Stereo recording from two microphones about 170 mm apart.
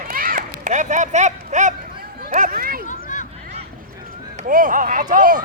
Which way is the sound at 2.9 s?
45° left (ahead or behind).